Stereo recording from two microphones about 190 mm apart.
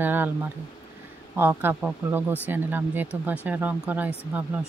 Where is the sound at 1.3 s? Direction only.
10° right (ahead or behind).